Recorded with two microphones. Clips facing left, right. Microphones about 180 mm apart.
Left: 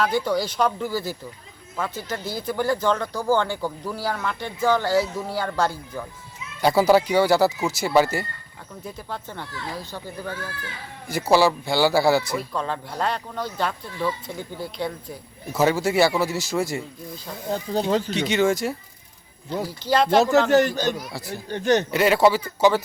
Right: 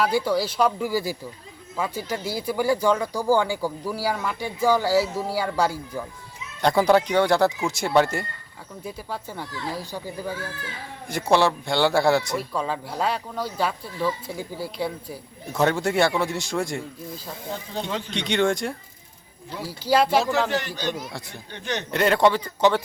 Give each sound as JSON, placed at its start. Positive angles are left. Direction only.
{"t": 0.0, "sound": "speech", "side_deg": -5}
{"t": 6.6, "sound": "a man's voice", "side_deg": 5}
{"t": 11.1, "sound": "a man's voice", "side_deg": 5}
{"t": 17.5, "sound": "speech", "side_deg": 40}
{"t": 18.1, "sound": "a man's voice", "side_deg": 5}
{"t": 19.6, "sound": "speech", "side_deg": -5}
{"t": 20.5, "sound": "a man's voice", "side_deg": 45}
{"t": 21.1, "sound": "a man's voice", "side_deg": 5}
{"t": 21.5, "sound": "a man's voice", "side_deg": 45}
{"t": 21.9, "sound": "a man's voice", "side_deg": 5}